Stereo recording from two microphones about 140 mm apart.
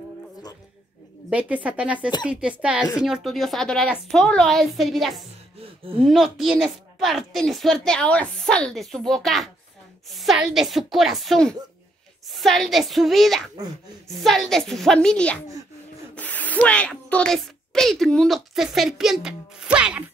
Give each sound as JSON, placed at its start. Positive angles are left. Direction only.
{"t": 1.3, "sound": "a woman's voice", "side_deg": -10}
{"t": 5.6, "sound": "gasp", "side_deg": -40}
{"t": 6.0, "sound": "a woman's voice", "side_deg": 0}